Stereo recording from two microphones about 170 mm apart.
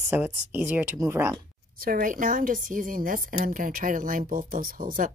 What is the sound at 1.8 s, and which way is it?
A woman's voice, 55° right (ahead or behind).